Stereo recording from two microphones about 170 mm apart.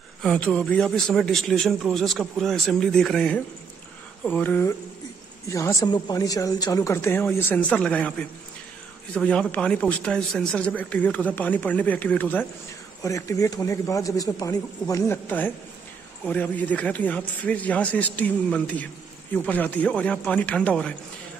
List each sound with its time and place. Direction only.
0.2 s a man's voice: 5° left (ahead or behind)